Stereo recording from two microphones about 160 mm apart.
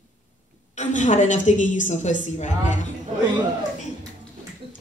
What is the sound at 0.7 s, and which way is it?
A woman's voice, 50° left (ahead or behind).